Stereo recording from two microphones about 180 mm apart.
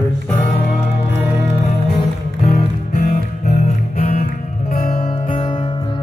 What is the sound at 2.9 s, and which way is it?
Music, 45° left (ahead or behind).